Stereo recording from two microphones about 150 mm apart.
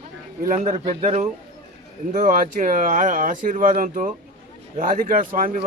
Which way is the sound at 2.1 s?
55° right (ahead or behind).